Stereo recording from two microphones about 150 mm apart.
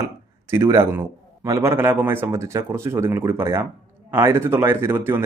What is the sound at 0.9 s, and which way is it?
A man's voice, 15° right (ahead or behind).